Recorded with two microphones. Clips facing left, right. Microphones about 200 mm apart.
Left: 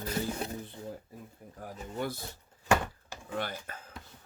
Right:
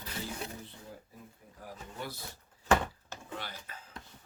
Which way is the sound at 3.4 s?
50° left (ahead or behind).